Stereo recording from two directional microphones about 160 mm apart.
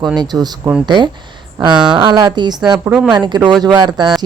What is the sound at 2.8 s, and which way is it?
Speech, 5° right (ahead or behind).